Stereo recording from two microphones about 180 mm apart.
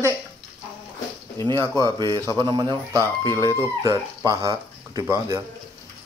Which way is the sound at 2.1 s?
20° right (ahead or behind).